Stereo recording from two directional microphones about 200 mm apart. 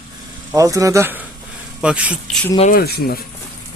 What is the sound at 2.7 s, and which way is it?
Speech, 50° left (ahead or behind).